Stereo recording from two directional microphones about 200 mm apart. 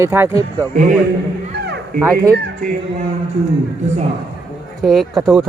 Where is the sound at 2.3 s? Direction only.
55° right (ahead or behind).